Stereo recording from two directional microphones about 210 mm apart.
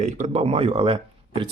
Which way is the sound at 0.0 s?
35° right (ahead or behind).